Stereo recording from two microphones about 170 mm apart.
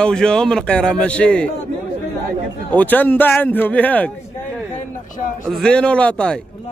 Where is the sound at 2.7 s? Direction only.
10° left (ahead or behind).